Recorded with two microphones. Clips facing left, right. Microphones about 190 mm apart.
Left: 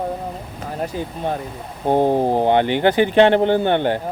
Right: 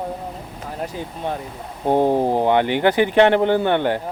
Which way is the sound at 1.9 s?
20° left (ahead or behind).